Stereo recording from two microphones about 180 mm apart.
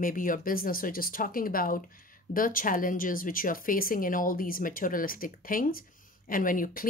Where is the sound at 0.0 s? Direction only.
50° left (ahead or behind).